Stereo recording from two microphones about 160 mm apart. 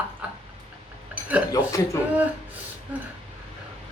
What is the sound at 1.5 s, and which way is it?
Speech, 20° left (ahead or behind).